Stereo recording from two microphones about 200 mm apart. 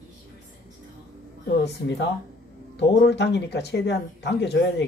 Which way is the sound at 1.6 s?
60° left (ahead or behind).